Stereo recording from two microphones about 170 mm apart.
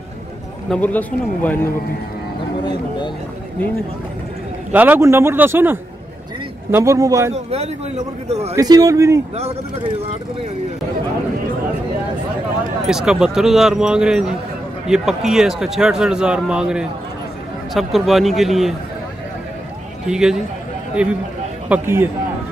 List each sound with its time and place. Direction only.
0.7 s speech: 10° left (ahead or behind)
4.7 s speech: 10° right (ahead or behind)
7.3 s a man's voice: 40° right (ahead or behind)
8.5 s speech: 20° right (ahead or behind)
12.8 s speech: 5° right (ahead or behind)
20.1 s speech: 5° right (ahead or behind)